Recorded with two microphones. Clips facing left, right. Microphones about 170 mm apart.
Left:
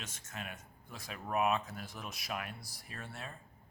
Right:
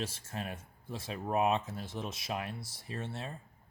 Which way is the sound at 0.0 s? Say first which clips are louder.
Right 7 dB; 30° right (ahead or behind).